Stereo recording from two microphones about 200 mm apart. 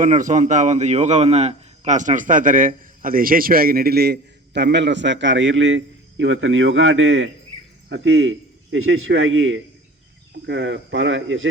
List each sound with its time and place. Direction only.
0.0 s a man's voice: 40° right (ahead or behind); by 7.3 s 75° right (ahead or behind)
7.9 s a man's voice: 60° right (ahead or behind)
10.4 s speech: 65° right (ahead or behind)